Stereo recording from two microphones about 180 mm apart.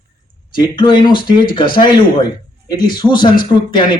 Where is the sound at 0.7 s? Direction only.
25° left (ahead or behind).